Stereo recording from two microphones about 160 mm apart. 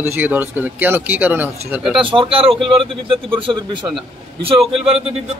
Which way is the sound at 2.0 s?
35° right (ahead or behind).